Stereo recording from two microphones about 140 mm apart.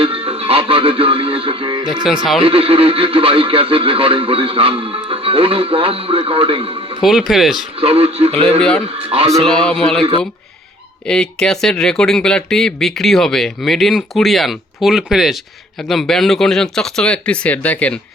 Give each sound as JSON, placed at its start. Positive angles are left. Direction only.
{"t": 0.0, "sound": "music", "side_deg": -40}
{"t": 2.0, "sound": "speech", "side_deg": 0}
{"t": 2.4, "sound": "speech", "side_deg": -40}
{"t": 7.0, "sound": "speech", "side_deg": 0}
{"t": 7.8, "sound": "speech", "side_deg": -45}
{"t": 9.4, "sound": "speech", "side_deg": 5}
{"t": 10.0, "sound": "speech", "side_deg": -40}
{"t": 11.0, "sound": "speech", "side_deg": 5}